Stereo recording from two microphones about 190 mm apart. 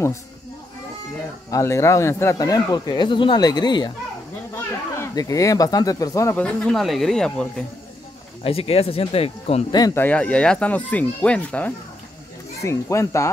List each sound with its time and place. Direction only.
1.5 s speech: 15° left (ahead or behind)
4.9 s speech: 20° left (ahead or behind)
8.5 s speech: 30° left (ahead or behind)
9.8 s speech: 20° left (ahead or behind)
10.0 s speech: 5° left (ahead or behind)